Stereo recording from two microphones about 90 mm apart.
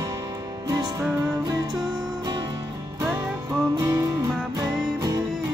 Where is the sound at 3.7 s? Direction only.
45° right (ahead or behind).